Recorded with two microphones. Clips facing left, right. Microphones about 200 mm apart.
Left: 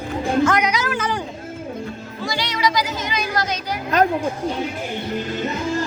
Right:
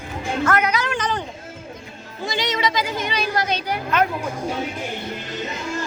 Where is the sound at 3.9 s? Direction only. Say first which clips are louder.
Left 3 dB; 40° left (ahead or behind).